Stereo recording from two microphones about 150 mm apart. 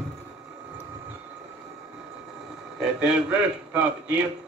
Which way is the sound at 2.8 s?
5° right (ahead or behind).